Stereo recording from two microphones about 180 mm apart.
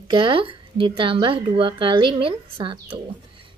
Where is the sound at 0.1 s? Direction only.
30° right (ahead or behind).